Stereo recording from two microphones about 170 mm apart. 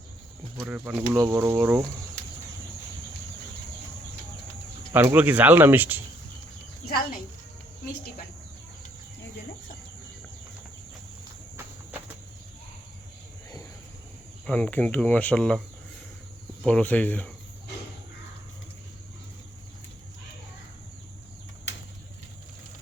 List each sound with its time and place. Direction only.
0.6 s speech: 5° right (ahead or behind)
4.9 s speech: 10° right (ahead or behind)
6.8 s a sound: 60° left (ahead or behind)
14.4 s speech: 5° left (ahead or behind)
16.6 s speech: 10° left (ahead or behind)